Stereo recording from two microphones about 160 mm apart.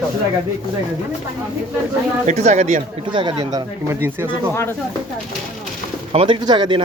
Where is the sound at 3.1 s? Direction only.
30° right (ahead or behind).